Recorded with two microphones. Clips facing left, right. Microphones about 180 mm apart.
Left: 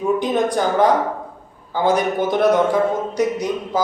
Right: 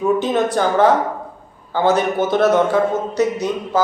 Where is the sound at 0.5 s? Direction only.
15° left (ahead or behind).